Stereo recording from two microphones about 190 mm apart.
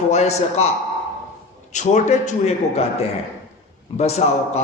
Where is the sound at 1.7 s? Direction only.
40° left (ahead or behind).